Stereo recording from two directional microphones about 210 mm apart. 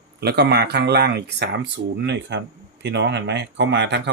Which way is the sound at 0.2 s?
50° right (ahead or behind).